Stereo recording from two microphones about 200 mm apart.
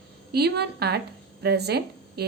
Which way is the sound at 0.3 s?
55° right (ahead or behind).